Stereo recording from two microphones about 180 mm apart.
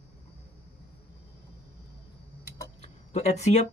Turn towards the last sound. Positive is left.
turn(degrees=40)  # may be behind; listen again after turning